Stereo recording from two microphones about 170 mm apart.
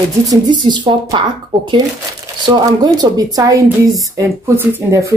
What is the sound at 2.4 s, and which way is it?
A woman's voice, 25° right (ahead or behind).